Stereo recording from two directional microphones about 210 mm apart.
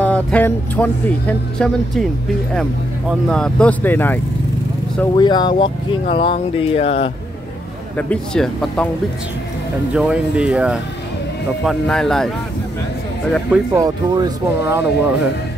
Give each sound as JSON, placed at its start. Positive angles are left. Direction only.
{"t": 0.0, "sound": "speech", "side_deg": 5}
{"t": 3.1, "sound": "speech", "side_deg": 0}
{"t": 5.1, "sound": "speech", "side_deg": 20}
{"t": 8.1, "sound": "speech", "side_deg": 5}
{"t": 9.9, "sound": "speech", "side_deg": -5}
{"t": 13.7, "sound": "speech", "side_deg": -20}